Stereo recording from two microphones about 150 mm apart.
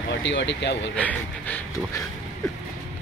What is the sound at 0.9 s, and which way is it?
Speech, 10° left (ahead or behind).